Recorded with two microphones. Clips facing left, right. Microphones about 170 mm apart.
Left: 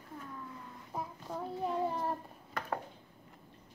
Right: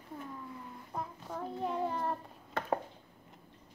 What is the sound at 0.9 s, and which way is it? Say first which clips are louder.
Child singing: even; 5° left (ahead or behind).